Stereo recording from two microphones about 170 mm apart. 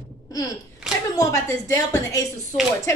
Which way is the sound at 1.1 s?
20° left (ahead or behind).